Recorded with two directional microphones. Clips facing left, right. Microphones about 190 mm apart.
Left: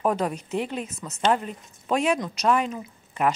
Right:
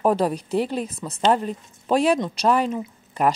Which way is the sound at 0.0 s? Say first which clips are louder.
Right 4 dB; 35° right (ahead or behind).